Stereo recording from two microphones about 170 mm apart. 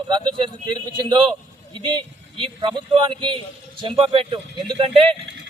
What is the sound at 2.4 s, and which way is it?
A man's voice, 30° right (ahead or behind).